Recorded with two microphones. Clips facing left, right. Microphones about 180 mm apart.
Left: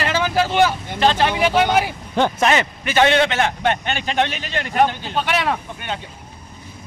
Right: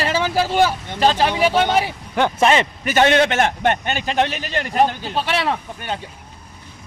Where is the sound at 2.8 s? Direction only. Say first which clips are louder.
Even; 45° right (ahead or behind).